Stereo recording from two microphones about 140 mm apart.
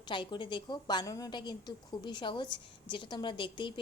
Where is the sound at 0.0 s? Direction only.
35° left (ahead or behind).